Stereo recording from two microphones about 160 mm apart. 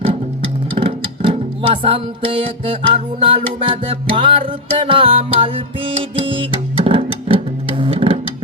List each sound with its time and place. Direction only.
0.8 s music: 30° right (ahead or behind)